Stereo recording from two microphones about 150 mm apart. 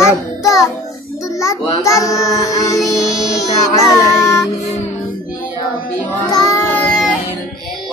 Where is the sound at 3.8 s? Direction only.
20° left (ahead or behind).